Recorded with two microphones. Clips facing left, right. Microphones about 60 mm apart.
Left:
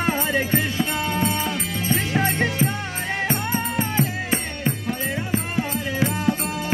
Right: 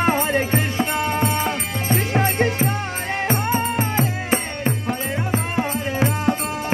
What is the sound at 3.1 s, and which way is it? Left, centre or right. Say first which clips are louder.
Music: right 3 dB; right.